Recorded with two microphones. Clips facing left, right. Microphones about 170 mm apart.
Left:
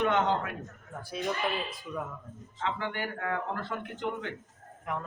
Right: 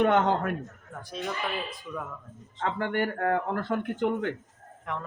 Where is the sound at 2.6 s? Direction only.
50° right (ahead or behind).